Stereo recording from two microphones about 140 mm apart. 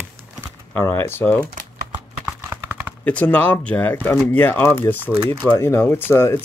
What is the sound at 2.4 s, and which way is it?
Computer keyboard, 15° right (ahead or behind).